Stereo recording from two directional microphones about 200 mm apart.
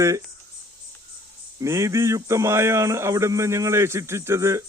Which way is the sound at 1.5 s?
15° right (ahead or behind).